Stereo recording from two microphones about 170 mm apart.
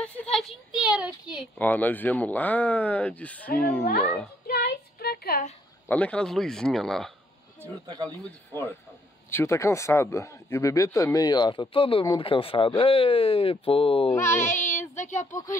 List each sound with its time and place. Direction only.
0.0 s a child's voice: 5° left (ahead or behind)
1.6 s speech: 10° left (ahead or behind)
4.5 s a sound: 65° left (ahead or behind)
5.9 s a child's voice: 10° left (ahead or behind)
7.6 s speech: 20° right (ahead or behind)
9.3 s speech: 15° left (ahead or behind); by 14.1 s 35° left (ahead or behind)
14.1 s speech: 15° left (ahead or behind)
15.0 s speech: 45° left (ahead or behind)